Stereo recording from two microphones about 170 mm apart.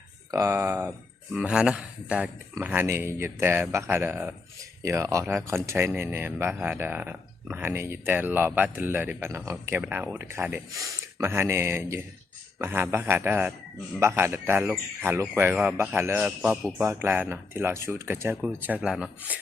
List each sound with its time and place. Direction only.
0.3 s speech: 15° right (ahead or behind)
1.3 s speech: 5° right (ahead or behind)